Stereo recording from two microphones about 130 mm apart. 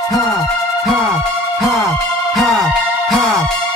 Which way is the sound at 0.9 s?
5° right (ahead or behind).